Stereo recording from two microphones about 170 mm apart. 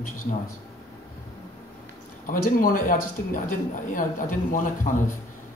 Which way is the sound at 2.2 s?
55° left (ahead or behind).